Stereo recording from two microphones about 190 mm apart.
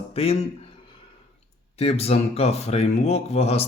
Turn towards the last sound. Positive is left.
turn(degrees=35)  # may be behind; listen again after turning